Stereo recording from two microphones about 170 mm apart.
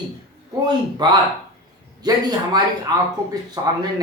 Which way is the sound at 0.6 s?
25° right (ahead or behind).